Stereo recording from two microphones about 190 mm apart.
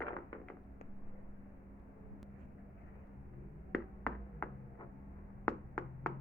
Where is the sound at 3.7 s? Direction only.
5° left (ahead or behind).